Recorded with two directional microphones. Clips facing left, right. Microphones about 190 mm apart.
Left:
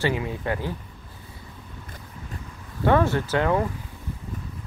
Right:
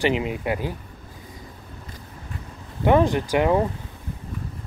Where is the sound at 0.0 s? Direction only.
20° right (ahead or behind).